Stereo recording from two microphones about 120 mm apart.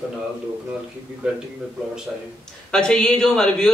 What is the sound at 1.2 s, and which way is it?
Speech, 5° right (ahead or behind).